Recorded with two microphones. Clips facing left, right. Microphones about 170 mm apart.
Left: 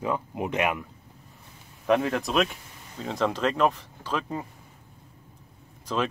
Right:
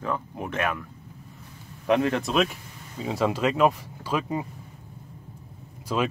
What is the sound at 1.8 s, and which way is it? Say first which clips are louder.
Speech: right 1 dB; centre (ahead or behind).